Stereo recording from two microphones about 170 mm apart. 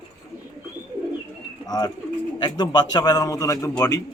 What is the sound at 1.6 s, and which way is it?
A man's voice, 25° left (ahead or behind).